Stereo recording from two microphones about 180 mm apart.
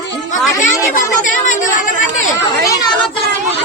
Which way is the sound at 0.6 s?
45° left (ahead or behind).